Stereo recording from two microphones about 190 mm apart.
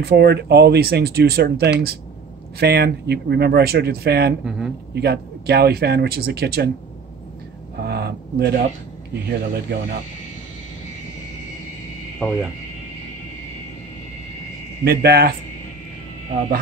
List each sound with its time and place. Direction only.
0.0 s speech: 60° right (ahead or behind)
7.8 s speech: 55° right (ahead or behind)
12.2 s speech: centre (ahead or behind)
14.9 s speech: 55° right (ahead or behind)